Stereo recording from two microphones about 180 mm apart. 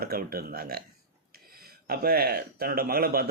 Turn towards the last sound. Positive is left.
turn(degrees=-55)  # may be behind; listen again after turning